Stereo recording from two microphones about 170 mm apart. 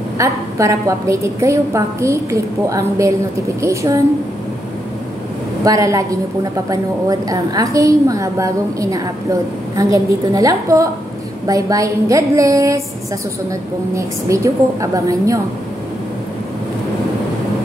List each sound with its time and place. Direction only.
0.2 s a woman's voice: 20° right (ahead or behind)
5.6 s a woman's voice: 20° right (ahead or behind)